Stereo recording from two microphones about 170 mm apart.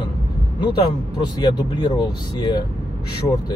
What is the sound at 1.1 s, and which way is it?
Speech, 25° left (ahead or behind).